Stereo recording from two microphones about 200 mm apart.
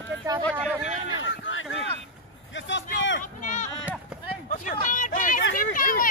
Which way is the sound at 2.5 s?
70° left (ahead or behind).